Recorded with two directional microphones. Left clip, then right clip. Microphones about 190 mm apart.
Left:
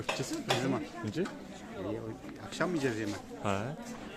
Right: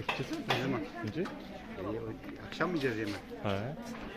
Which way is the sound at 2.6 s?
65° left (ahead or behind).